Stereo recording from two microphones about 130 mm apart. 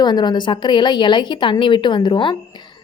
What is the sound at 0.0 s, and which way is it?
Speech, 35° left (ahead or behind).